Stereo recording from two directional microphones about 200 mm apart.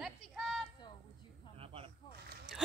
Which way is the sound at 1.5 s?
30° right (ahead or behind).